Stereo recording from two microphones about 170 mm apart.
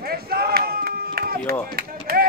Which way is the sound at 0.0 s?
65° right (ahead or behind).